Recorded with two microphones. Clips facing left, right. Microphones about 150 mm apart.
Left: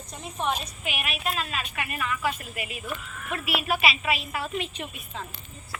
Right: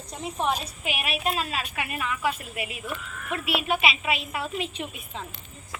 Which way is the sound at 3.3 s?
25° right (ahead or behind).